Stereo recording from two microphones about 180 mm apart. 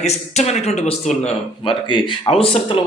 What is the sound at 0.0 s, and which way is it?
Speech, 35° left (ahead or behind).